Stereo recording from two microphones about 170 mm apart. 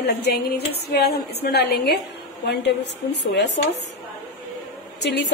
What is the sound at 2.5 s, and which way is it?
Speech, 85° left.